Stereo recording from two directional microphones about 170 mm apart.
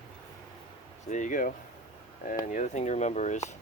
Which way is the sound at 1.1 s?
50° left (ahead or behind).